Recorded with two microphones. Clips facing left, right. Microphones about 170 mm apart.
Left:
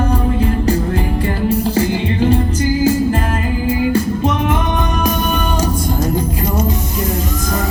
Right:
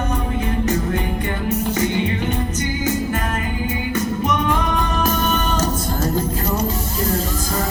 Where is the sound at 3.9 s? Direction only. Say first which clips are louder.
Left 5 dB; 30° left (ahead or behind).